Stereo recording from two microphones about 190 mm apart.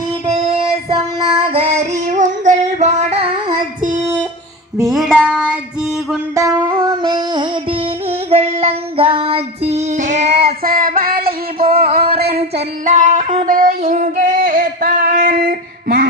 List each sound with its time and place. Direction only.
0.3 s child singing: 30° right (ahead or behind)
4.9 s music: centre (ahead or behind)
5.2 s child singing: 5° right (ahead or behind)
6.3 s music: 20° right (ahead or behind)
8.3 s child singing: 30° right (ahead or behind)
10.6 s music: 50° right (ahead or behind)
11.8 s a sound: 50° right (ahead or behind)
12.1 s music: 50° right (ahead or behind)
12.5 s child singing: 45° right (ahead or behind)
13.4 s female singing: 45° right (ahead or behind)